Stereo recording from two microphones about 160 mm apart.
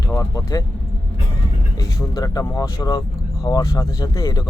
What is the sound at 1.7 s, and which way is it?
Speech, 20° left (ahead or behind).